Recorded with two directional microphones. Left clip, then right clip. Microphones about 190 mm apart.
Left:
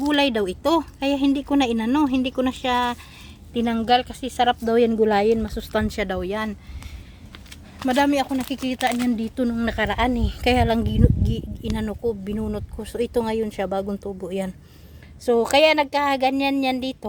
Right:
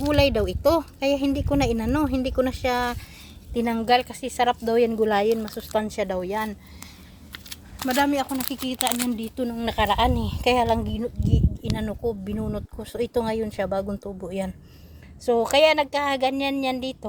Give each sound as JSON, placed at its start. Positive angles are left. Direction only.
{"t": 0.0, "sound": "a woman's voice", "side_deg": 10}
{"t": 7.3, "sound": "keys jangling", "side_deg": -55}
{"t": 7.9, "sound": "speech", "side_deg": 20}
{"t": 10.8, "sound": "a woman's voice", "side_deg": 25}